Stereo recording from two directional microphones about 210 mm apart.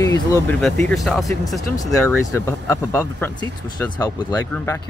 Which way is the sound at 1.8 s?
10° left (ahead or behind).